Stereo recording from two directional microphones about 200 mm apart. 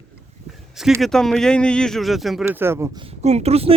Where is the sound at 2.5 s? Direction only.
10° right (ahead or behind).